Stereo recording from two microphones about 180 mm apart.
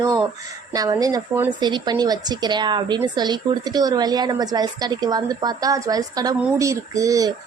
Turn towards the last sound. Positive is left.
turn(degrees=-20)  # may be behind; listen again after turning